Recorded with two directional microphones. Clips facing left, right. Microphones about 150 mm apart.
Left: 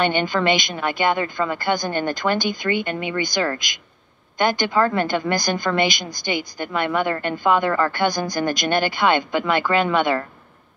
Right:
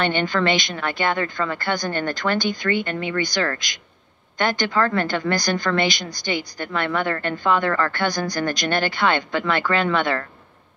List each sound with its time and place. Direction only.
0.0 s a woman's voice: 15° left (ahead or behind)